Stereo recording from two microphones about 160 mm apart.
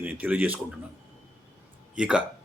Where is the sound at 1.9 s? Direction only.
5° right (ahead or behind).